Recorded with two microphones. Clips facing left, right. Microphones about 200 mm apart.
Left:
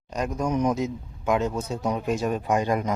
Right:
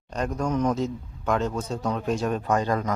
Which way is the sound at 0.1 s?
10° left (ahead or behind).